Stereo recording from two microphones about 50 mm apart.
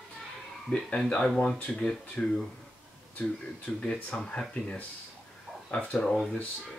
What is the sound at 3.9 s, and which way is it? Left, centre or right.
Speech, centre.